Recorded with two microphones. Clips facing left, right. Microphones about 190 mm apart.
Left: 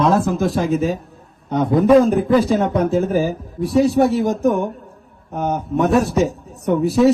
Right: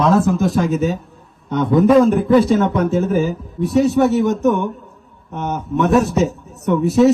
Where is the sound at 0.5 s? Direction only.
35° left (ahead or behind).